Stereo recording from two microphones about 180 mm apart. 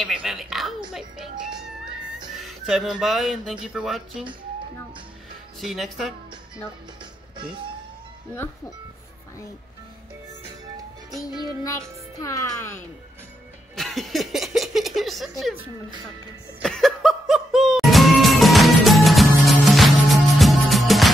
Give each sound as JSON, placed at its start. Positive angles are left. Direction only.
{"t": 0.0, "sound": "speech", "side_deg": 0}
{"t": 1.4, "sound": "music", "side_deg": -5}
{"t": 2.3, "sound": "speech", "side_deg": 0}
{"t": 5.6, "sound": "speech", "side_deg": 0}
{"t": 11.6, "sound": "a child's voice", "side_deg": 20}
{"t": 13.7, "sound": "a sound", "side_deg": 0}
{"t": 16.6, "sound": "music", "side_deg": 0}